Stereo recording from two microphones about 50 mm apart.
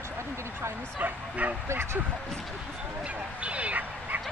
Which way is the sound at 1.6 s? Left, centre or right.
Right.